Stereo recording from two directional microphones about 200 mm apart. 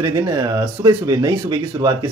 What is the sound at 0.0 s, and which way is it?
Speech, 15° right (ahead or behind).